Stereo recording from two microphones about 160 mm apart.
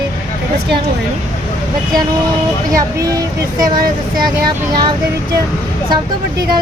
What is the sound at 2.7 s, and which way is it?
Speech, 20° right (ahead or behind).